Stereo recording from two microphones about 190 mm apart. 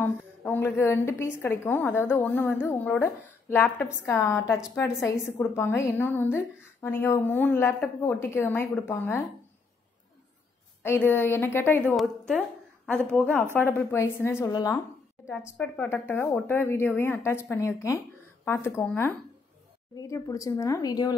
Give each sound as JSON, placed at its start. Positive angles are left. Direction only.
{"t": 0.0, "sound": "a woman's voice", "side_deg": 10}
{"t": 10.8, "sound": "a woman's voice", "side_deg": 10}